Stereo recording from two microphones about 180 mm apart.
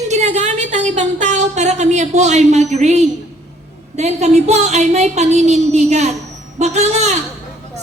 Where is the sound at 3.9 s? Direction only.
40° right (ahead or behind).